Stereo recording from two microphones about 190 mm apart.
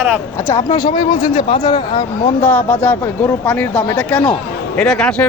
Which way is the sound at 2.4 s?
5° left (ahead or behind).